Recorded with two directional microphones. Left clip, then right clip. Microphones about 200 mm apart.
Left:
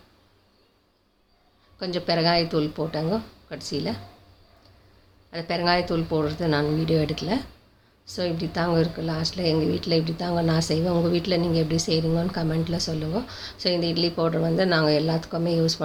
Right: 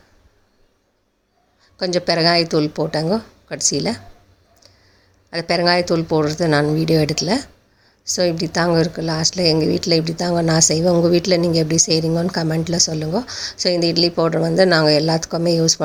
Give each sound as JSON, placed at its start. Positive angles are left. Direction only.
{"t": 1.8, "sound": "a woman's voice", "side_deg": -40}
{"t": 5.3, "sound": "a woman's voice", "side_deg": -45}